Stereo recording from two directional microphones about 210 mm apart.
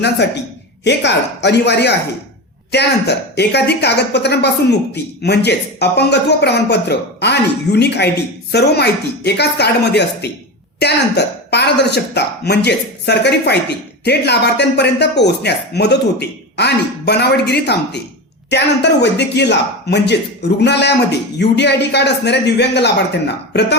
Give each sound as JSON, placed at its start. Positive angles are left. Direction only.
{"t": 0.9, "sound": "speech", "side_deg": 55}